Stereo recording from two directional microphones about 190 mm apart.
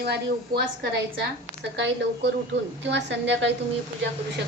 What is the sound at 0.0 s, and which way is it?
A woman's voice, 55° right (ahead or behind).